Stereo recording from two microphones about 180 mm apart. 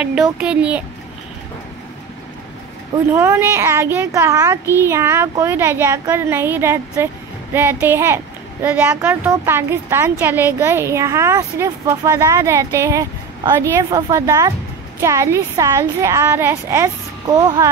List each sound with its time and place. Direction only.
0.0 s speech: 5° right (ahead or behind)
3.1 s speech: 10° right (ahead or behind)